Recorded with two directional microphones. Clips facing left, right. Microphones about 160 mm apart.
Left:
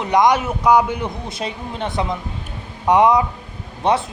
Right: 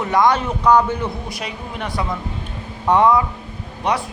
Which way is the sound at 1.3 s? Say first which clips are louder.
Left 2 dB; 25° left (ahead or behind).